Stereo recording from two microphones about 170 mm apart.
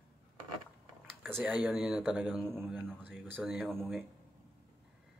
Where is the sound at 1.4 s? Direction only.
5° right (ahead or behind).